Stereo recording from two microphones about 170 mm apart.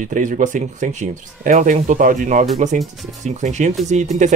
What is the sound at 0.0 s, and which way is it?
Speech, 50° right (ahead or behind).